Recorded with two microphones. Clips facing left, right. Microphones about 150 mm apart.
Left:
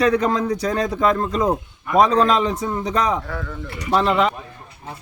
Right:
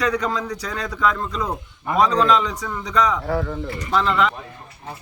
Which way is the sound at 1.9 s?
25° right (ahead or behind).